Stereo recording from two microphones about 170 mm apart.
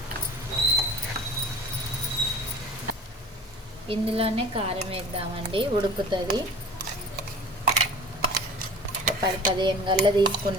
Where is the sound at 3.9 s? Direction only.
35° right (ahead or behind).